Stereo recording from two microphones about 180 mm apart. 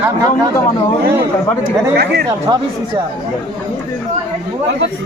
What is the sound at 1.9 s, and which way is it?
Speech, 65° right (ahead or behind).